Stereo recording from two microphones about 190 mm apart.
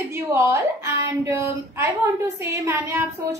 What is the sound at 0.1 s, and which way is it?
A woman's voice, 10° right (ahead or behind).